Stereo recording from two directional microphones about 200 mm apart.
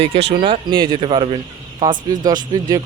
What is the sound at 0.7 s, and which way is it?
Speech, 25° right (ahead or behind).